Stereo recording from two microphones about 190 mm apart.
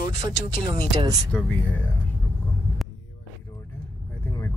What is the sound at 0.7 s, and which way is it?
Speech, 20° right (ahead or behind).